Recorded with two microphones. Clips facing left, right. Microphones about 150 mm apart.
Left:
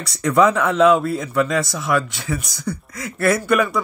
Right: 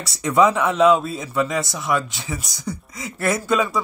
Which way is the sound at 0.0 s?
20° right (ahead or behind).